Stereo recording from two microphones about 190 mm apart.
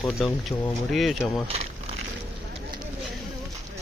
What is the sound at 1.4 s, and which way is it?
Crumpling, 35° right (ahead or behind).